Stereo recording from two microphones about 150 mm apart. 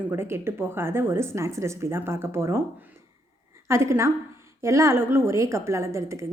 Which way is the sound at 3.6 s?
20° right (ahead or behind).